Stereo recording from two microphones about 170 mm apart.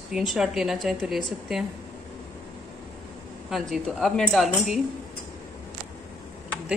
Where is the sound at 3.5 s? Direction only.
Centre (ahead or behind).